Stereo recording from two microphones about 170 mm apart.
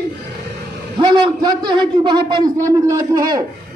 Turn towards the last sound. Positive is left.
turn(degrees=-20)  # may be behind; listen again after turning